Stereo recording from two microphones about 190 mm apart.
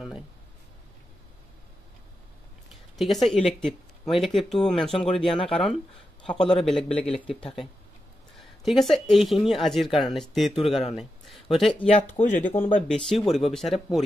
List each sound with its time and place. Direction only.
2.7 s a sound: centre (ahead or behind)
3.6 s speech: centre (ahead or behind)
8.4 s speech: centre (ahead or behind)
11.9 s speech: 40° left (ahead or behind)
12.8 s speech: centre (ahead or behind)